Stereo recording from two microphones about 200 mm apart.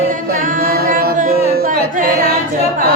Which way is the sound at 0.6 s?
45° right (ahead or behind).